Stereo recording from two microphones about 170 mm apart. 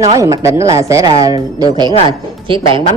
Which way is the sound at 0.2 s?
20° right (ahead or behind).